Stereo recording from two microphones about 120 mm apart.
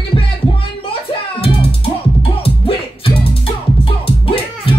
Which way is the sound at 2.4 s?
50° left (ahead or behind).